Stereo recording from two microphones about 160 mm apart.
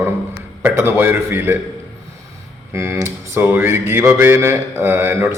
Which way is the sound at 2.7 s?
15° right (ahead or behind).